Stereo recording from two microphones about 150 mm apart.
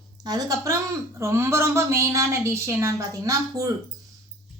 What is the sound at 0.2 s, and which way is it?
A woman's voice, 25° right (ahead or behind).